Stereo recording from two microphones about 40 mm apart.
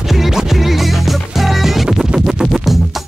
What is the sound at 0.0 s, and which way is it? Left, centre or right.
Music, centre.